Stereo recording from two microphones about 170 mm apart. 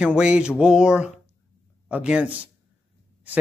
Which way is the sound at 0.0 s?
5° right (ahead or behind).